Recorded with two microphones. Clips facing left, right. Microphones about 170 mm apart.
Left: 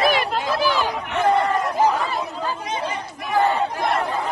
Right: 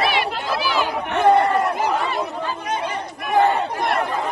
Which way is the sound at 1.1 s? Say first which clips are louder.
Right 4 dB; 65° right (ahead or behind).